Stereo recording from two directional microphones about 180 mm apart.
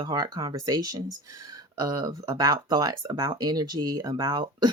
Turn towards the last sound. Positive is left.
turn(degrees=-25)  # may be behind; listen again after turning